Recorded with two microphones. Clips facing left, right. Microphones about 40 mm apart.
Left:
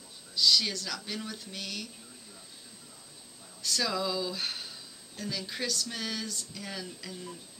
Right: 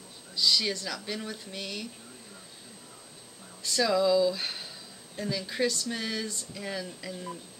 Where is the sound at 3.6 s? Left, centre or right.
Centre.